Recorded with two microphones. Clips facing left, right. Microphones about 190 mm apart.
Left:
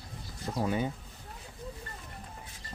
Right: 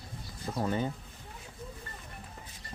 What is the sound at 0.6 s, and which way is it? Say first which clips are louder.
Speech: left 1 dB; 10° left (ahead or behind).